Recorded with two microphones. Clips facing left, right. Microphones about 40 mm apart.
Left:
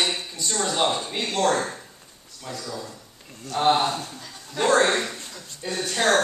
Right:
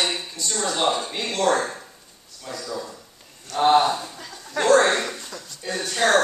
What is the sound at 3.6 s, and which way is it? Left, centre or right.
Speech, centre.